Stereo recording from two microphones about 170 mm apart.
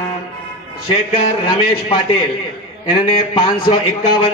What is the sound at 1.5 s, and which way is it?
A man's voice, 30° left (ahead or behind).